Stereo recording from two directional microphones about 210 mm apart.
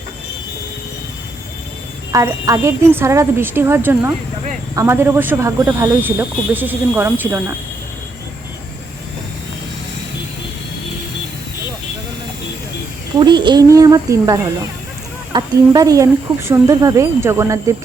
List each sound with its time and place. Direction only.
2.1 s speech: 15° right (ahead or behind)
13.1 s speech: 20° right (ahead or behind)